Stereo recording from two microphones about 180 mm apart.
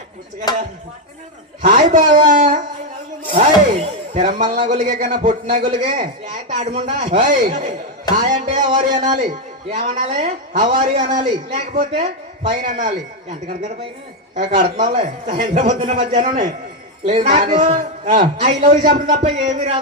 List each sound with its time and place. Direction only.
0.5 s speech: 20° left (ahead or behind)
1.6 s a woman's voice: 45° right (ahead or behind)
2.3 s music: 50° right (ahead or behind)
3.3 s a sound: 40° right (ahead or behind)
4.7 s a woman's voice: 45° right (ahead or behind)
8.1 s music: 40° right (ahead or behind)
8.8 s a woman's voice: 45° right (ahead or behind)
14.3 s a woman's voice: 45° right (ahead or behind)